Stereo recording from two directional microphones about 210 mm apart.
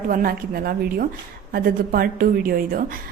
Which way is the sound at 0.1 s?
45° right (ahead or behind).